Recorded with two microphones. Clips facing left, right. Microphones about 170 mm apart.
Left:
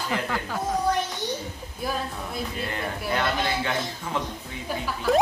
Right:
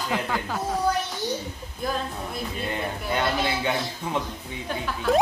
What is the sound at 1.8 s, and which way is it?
Speech, 5° left (ahead or behind).